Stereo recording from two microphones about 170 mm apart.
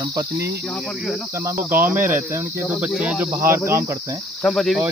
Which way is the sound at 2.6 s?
Centre (ahead or behind).